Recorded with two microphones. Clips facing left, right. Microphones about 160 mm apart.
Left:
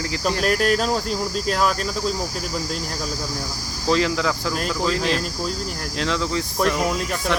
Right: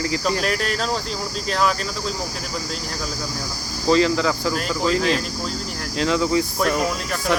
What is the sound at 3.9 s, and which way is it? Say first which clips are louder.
Speech: right 3 dB; centre (ahead or behind).